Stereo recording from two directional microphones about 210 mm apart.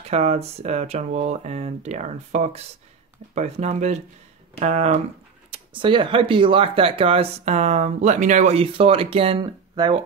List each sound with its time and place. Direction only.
0.1 s speech: 30° right (ahead or behind)